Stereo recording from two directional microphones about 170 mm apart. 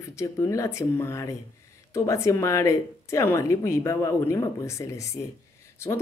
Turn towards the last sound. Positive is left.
turn(degrees=15)  # may be behind; listen again after turning